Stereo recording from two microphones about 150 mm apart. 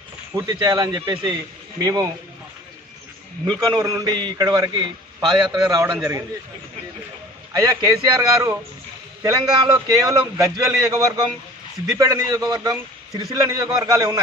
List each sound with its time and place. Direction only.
0.4 s a man's voice: 25° right (ahead or behind)
3.7 s a man's voice: 25° right (ahead or behind)
7.6 s a man's voice: 25° right (ahead or behind)